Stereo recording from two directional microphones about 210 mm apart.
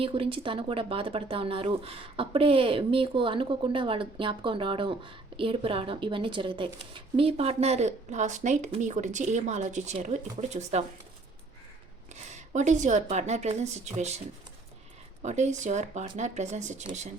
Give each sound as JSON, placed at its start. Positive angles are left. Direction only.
{"t": 0.0, "sound": "speech", "side_deg": -25}
{"t": 12.3, "sound": "speech", "side_deg": -35}
{"t": 15.2, "sound": "speech", "side_deg": -35}